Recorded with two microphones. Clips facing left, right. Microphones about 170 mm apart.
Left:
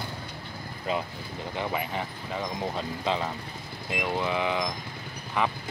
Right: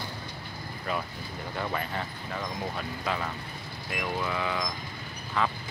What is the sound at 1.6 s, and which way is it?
Speech, 15° left (ahead or behind).